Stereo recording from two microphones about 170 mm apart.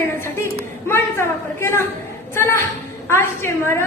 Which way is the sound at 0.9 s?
15° left (ahead or behind).